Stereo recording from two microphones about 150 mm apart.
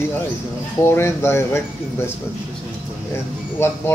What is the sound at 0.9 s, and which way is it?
Speech, 15° left (ahead or behind).